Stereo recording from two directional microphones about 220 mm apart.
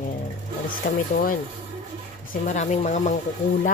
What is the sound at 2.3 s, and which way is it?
Speech, 35° left (ahead or behind).